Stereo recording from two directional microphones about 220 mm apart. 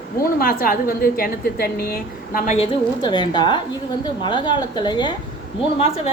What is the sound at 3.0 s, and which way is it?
A woman's voice, 20° left (ahead or behind).